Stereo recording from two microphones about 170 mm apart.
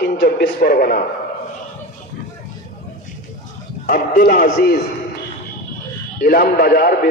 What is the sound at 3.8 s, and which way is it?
Speech, 55° left (ahead or behind).